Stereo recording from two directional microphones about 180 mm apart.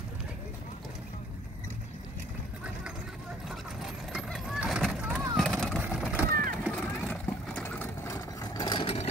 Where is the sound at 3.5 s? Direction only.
Centre (ahead or behind).